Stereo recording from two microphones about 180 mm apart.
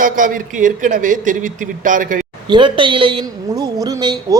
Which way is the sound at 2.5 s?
25° right (ahead or behind).